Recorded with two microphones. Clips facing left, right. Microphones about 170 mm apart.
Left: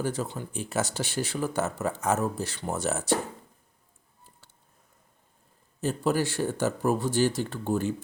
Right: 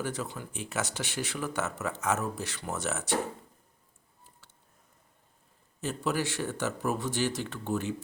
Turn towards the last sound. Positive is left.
turn(degrees=35)  # may be behind; listen again after turning